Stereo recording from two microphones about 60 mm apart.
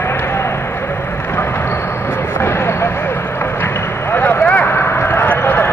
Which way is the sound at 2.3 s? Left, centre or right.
Left.